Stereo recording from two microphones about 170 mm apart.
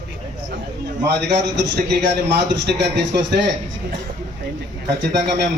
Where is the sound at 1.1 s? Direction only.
85° right.